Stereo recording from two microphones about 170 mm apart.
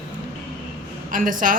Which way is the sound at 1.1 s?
50° right (ahead or behind).